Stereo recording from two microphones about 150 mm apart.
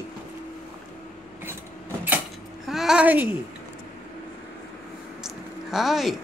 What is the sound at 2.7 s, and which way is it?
Speech, 5° right (ahead or behind).